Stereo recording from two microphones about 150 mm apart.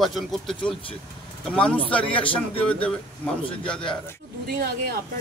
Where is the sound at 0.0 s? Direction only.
Centre (ahead or behind).